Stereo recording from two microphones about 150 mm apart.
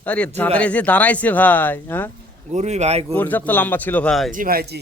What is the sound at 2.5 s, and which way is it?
Speech, 50° right (ahead or behind).